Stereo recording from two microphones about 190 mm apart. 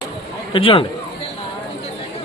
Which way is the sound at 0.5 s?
25° left (ahead or behind).